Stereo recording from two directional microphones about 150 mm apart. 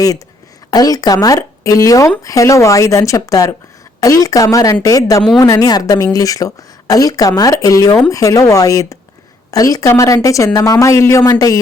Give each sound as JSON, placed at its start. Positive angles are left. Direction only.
{"t": 0.7, "sound": "speech", "side_deg": 25}